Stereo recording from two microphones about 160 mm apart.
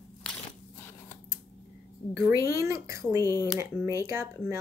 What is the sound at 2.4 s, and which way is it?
Speech, 20° right (ahead or behind).